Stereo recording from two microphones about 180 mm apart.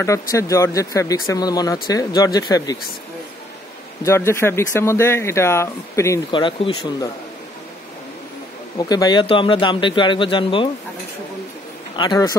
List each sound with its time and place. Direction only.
0.0 s speech: 15° left (ahead or behind)
4.0 s speech: 15° left (ahead or behind)
6.3 s speech: 25° left (ahead or behind)
8.7 s speech: 20° left (ahead or behind)
12.0 s speech: 20° left (ahead or behind)